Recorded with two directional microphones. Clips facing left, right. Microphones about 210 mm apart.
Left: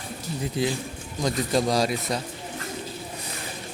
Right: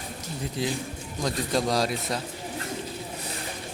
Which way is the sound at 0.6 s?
Centre (ahead or behind).